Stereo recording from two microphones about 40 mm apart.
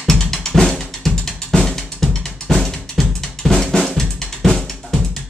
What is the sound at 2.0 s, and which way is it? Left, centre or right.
Drum kit, centre.